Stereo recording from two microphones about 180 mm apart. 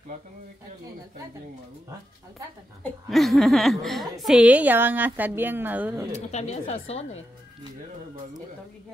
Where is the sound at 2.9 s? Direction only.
Centre (ahead or behind).